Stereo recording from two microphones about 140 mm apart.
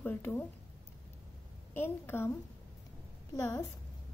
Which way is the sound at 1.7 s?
15° left (ahead or behind).